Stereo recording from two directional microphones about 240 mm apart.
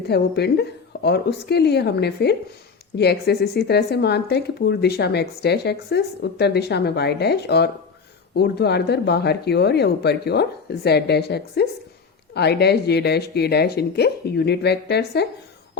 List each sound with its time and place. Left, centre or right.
0.1 s speech: left